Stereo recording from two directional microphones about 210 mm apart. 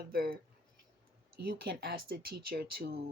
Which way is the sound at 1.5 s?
50° right (ahead or behind).